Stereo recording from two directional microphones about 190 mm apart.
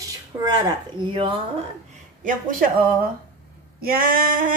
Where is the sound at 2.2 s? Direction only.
45° right (ahead or behind).